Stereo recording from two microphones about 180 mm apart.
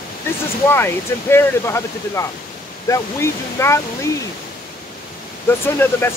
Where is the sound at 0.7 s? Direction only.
15° left (ahead or behind).